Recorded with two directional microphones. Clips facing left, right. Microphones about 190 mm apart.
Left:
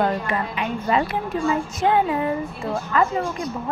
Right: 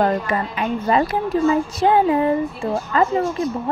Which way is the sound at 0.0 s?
40° right (ahead or behind).